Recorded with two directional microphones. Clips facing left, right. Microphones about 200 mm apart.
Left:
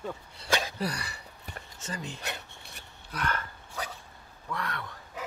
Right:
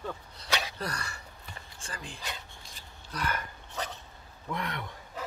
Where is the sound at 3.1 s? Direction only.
5° left (ahead or behind).